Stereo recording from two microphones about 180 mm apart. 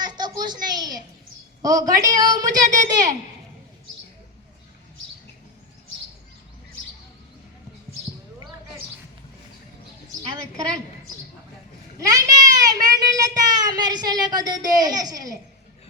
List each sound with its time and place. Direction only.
0.0 s a sound: 25° right (ahead or behind)
1.6 s a woman's voice: 20° right (ahead or behind)
11.9 s a child's voice: 20° right (ahead or behind)